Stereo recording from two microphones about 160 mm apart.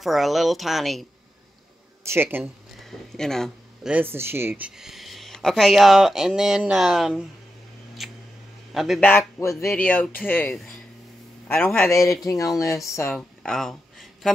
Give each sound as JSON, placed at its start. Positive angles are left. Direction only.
{"t": 0.0, "sound": "speech", "side_deg": 0}
{"t": 2.0, "sound": "speech", "side_deg": -15}
{"t": 2.8, "sound": "speech", "side_deg": 5}
{"t": 3.9, "sound": "speech", "side_deg": -15}
{"t": 8.0, "sound": "a sound", "side_deg": 0}
{"t": 8.7, "sound": "speech", "side_deg": 0}
{"t": 9.4, "sound": "speech", "side_deg": 20}
{"t": 13.1, "sound": "a sound", "side_deg": 5}